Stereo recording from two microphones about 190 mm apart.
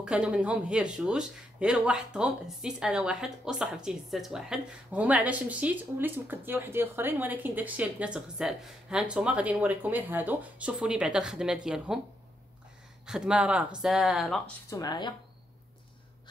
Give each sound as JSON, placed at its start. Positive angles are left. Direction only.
{"t": 0.0, "sound": "speech", "side_deg": -5}
{"t": 13.0, "sound": "speech", "side_deg": -5}
{"t": 14.7, "sound": "speech", "side_deg": 20}